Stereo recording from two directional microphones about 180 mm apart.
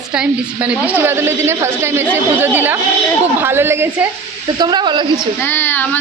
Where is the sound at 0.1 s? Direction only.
5° right (ahead or behind).